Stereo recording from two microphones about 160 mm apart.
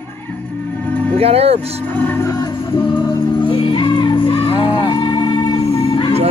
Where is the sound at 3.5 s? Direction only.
30° left (ahead or behind).